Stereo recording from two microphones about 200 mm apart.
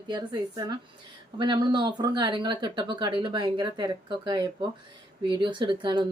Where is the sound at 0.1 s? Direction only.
20° right (ahead or behind).